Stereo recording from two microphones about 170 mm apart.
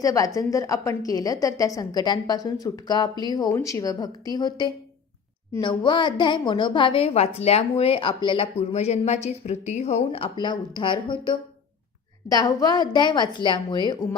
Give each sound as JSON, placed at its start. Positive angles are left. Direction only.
{"t": 0.0, "sound": "a woman's voice", "side_deg": 20}
{"t": 10.0, "sound": "a woman's voice", "side_deg": 30}